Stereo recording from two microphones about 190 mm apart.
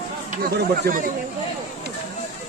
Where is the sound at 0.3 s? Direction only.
45° right (ahead or behind).